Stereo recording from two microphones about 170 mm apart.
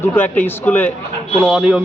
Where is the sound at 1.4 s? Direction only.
5° right (ahead or behind).